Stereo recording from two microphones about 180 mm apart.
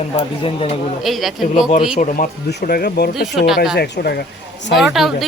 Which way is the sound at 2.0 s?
40° left (ahead or behind).